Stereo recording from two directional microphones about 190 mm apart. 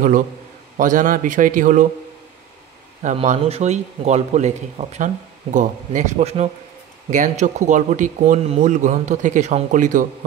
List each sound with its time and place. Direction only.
0.7 s a man's voice: 45° right (ahead or behind)
3.0 s speech: 40° right (ahead or behind)